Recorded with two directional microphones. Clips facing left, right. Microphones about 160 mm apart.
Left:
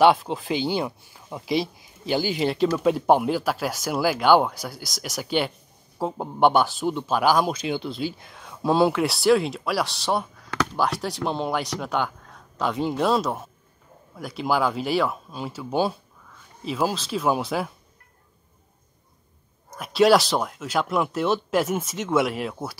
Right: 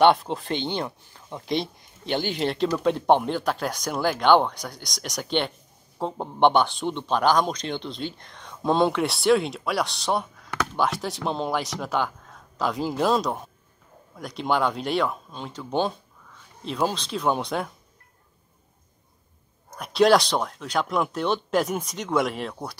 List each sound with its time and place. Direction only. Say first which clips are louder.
0.0 s speech: left 1 dB; centre (ahead or behind)
19.7 s speech: left 1 dB; centre (ahead or behind)